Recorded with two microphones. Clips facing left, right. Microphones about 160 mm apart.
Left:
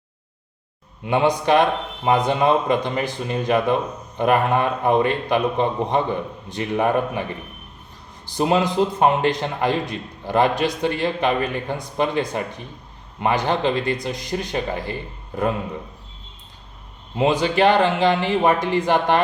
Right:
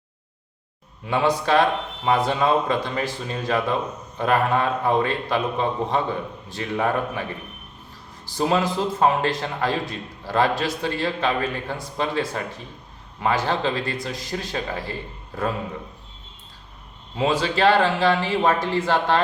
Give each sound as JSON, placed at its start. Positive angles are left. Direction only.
{"t": 1.0, "sound": "a man's voice", "side_deg": 20}
{"t": 8.3, "sound": "a man's voice", "side_deg": 20}
{"t": 17.2, "sound": "a man's voice", "side_deg": 20}